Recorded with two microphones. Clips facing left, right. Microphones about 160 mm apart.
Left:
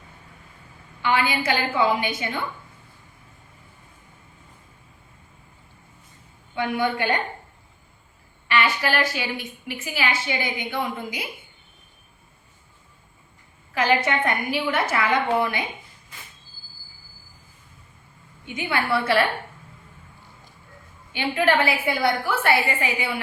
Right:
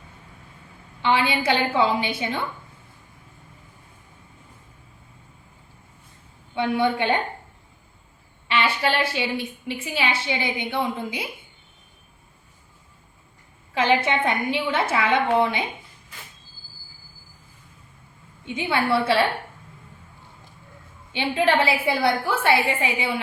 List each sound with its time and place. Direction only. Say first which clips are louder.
1.0 s a woman's voice: right 1 dB; 25° right (ahead or behind)
6.6 s a woman's voice: right 2 dB; 25° right (ahead or behind)
8.4 s a woman's voice: even; 25° right (ahead or behind)
13.7 s a woman's voice: right 1 dB; 25° right (ahead or behind)
18.4 s a woman's voice: right 2 dB; 25° right (ahead or behind)
21.1 s a woman's voice: even; 25° right (ahead or behind)